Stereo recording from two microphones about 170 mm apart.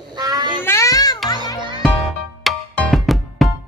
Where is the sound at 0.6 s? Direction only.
15° left (ahead or behind).